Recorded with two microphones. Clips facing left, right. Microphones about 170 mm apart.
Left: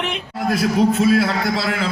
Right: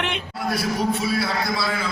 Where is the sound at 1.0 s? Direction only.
90° left.